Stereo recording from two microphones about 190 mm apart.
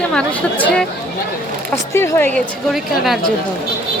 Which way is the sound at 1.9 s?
10° left (ahead or behind).